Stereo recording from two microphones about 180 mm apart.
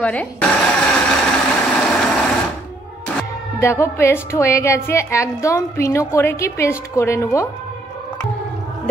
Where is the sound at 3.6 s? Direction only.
15° left (ahead or behind).